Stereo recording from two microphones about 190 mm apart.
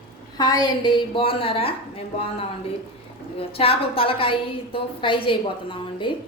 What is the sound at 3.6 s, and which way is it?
A woman's voice, 30° left (ahead or behind).